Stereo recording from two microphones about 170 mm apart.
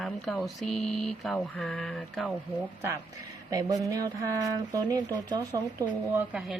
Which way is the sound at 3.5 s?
20° right (ahead or behind).